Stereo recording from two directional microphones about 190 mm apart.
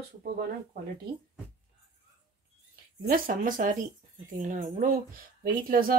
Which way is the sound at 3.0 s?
45° right (ahead or behind).